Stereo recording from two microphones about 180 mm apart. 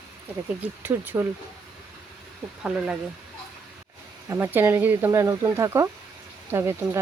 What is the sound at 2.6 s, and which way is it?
Speech, 5° right (ahead or behind).